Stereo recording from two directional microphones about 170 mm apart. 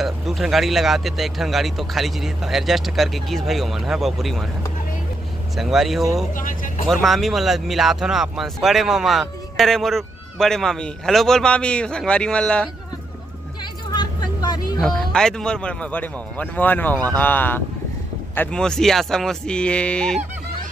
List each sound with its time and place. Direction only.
0.0 s speech: centre (ahead or behind)
5.6 s speech: centre (ahead or behind)
6.3 s speech: 50° left (ahead or behind)
6.9 s speech: centre (ahead or behind)
13.8 s vehicle: 25° left (ahead or behind)
14.8 s a man's voice: 5° left (ahead or behind)